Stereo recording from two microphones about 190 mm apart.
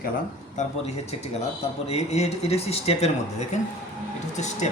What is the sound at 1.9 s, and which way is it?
Speech, 35° left (ahead or behind).